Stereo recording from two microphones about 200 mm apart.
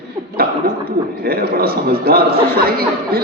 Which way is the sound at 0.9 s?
50° right (ahead or behind).